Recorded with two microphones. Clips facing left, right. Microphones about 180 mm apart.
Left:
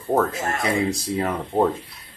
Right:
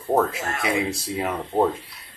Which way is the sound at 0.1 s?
10° right (ahead or behind).